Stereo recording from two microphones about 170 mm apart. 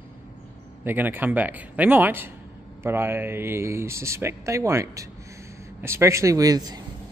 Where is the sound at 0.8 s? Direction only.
10° right (ahead or behind).